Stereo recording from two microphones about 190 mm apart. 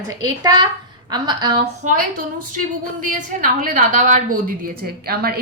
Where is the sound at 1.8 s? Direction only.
45° right (ahead or behind).